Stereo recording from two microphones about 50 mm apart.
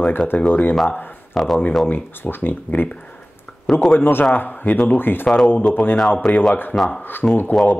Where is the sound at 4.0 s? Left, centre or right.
Left.